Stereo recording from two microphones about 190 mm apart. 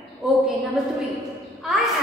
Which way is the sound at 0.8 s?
Centre (ahead or behind).